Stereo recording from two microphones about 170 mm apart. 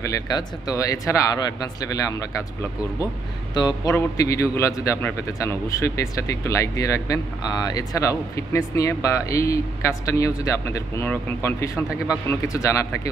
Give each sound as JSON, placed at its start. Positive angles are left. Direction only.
{"t": 0.0, "sound": "speech", "side_deg": 20}
{"t": 3.5, "sound": "a man's voice", "side_deg": 25}